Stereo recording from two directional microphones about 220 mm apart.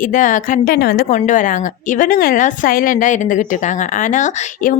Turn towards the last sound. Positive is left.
turn(degrees=35)  # may be behind; listen again after turning